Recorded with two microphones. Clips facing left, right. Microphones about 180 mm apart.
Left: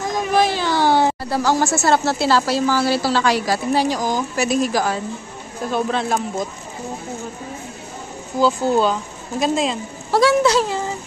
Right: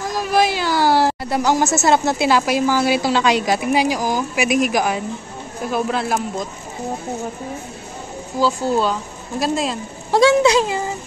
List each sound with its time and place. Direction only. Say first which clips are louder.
0.0 s a sound: even; 5° right (ahead or behind)
1.3 s a woman's voice: right 2 dB; 15° right (ahead or behind)
5.7 s speech: even; 5° right (ahead or behind)
8.4 s speech: left 2 dB; centre (ahead or behind)
10.1 s a woman's voice: right 2 dB; 15° right (ahead or behind)